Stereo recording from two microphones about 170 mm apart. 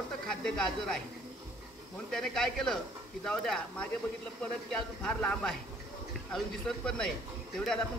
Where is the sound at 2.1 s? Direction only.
5° left (ahead or behind).